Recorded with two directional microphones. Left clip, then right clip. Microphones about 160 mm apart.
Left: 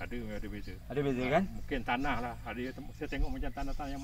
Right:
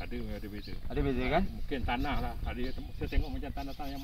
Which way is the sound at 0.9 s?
35° left (ahead or behind).